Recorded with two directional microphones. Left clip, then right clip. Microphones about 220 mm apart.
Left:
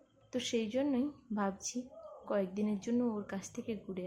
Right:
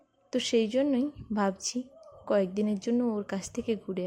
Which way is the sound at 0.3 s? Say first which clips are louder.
Right 9 dB; 30° right (ahead or behind).